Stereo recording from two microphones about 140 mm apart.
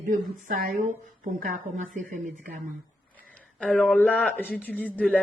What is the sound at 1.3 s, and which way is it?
Speech, 85° right.